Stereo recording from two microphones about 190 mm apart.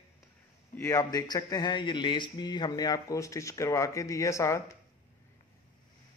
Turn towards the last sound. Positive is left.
turn(degrees=15)  # may be behind; listen again after turning